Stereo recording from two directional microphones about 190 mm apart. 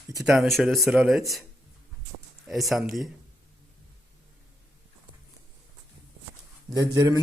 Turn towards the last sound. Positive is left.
turn(degrees=-20)  # may be behind; listen again after turning